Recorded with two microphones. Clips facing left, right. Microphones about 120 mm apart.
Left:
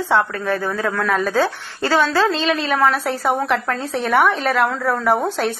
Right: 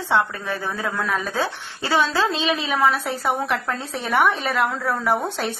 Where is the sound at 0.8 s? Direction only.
15° right (ahead or behind).